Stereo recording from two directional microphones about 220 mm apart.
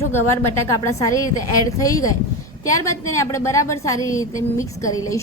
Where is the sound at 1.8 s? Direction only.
15° left (ahead or behind).